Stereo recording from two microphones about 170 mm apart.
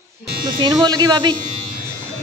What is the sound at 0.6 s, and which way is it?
Speech, 25° right (ahead or behind).